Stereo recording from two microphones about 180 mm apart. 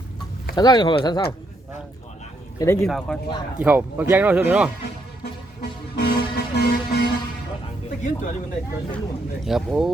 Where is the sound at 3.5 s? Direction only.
10° right (ahead or behind).